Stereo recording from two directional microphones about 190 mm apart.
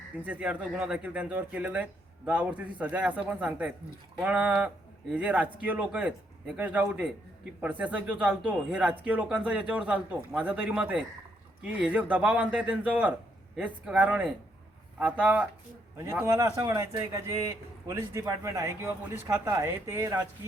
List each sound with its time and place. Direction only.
0.3 s speech: 10° right (ahead or behind)